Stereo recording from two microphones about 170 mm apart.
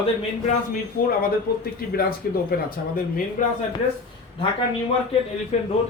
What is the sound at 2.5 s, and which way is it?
Speech, 60° left (ahead or behind).